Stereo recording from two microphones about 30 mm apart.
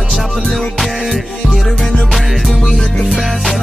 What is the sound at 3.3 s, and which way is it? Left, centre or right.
Music, centre.